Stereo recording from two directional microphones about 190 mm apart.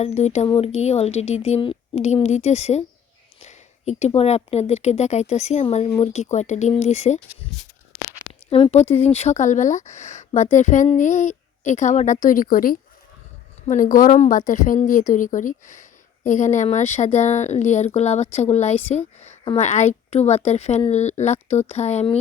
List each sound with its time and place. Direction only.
0.0 s speech: 35° left (ahead or behind)
8.4 s speech: 30° left (ahead or behind)